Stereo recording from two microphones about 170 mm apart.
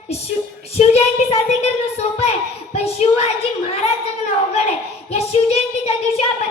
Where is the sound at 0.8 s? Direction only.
35° left (ahead or behind).